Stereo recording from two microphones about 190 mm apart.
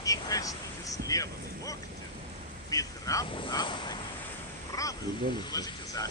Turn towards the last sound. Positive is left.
turn(degrees=20)  # may be behind; listen again after turning